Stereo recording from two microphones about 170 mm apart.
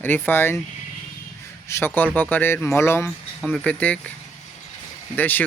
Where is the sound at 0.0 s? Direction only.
10° left (ahead or behind).